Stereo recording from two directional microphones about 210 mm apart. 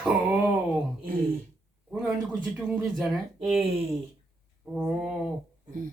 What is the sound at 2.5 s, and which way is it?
Speech, centre (ahead or behind).